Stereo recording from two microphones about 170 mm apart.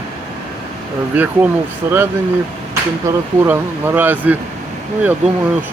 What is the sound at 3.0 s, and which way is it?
Speech, 15° right (ahead or behind).